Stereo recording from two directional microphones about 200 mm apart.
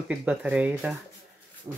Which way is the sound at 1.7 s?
15° right (ahead or behind).